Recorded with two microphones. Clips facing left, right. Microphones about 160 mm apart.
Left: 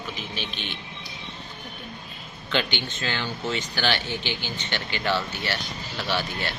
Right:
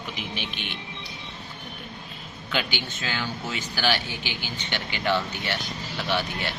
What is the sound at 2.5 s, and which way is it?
A man's voice, 10° right (ahead or behind).